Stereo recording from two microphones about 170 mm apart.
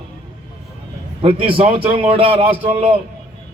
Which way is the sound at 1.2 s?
30° right (ahead or behind).